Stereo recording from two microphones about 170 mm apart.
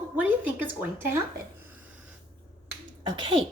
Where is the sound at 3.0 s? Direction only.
30° right (ahead or behind).